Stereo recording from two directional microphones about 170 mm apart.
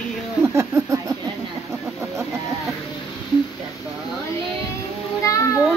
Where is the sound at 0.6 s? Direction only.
20° right (ahead or behind).